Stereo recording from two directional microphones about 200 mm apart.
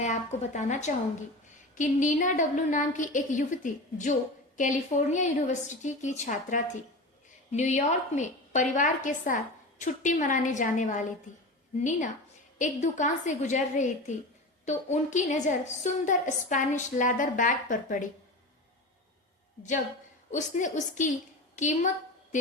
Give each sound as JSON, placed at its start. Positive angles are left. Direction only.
{"t": 0.0, "sound": "a woman's voice", "side_deg": 35}
{"t": 20.3, "sound": "a woman's voice", "side_deg": 40}